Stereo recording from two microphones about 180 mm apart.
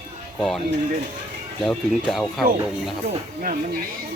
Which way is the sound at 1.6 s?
Centre (ahead or behind).